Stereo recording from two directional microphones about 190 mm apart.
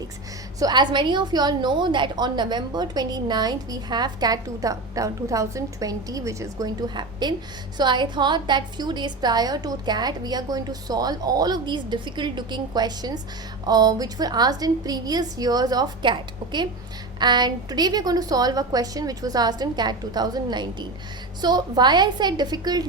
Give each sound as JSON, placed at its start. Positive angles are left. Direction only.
{"t": 0.6, "sound": "a woman's voice", "side_deg": -25}